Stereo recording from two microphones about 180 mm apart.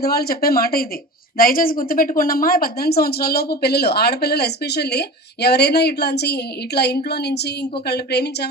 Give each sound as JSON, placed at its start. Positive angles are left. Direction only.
{"t": 0.0, "sound": "a woman's voice", "side_deg": 60}